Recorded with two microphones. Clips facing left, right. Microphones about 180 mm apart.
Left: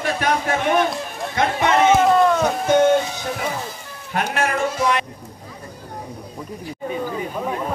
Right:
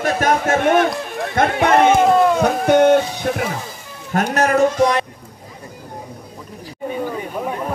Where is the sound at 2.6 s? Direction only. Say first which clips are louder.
Right 4 dB; 65° right (ahead or behind).